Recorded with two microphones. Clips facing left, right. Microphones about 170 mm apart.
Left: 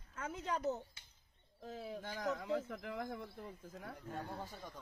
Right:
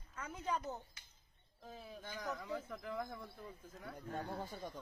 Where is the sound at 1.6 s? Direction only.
85° left.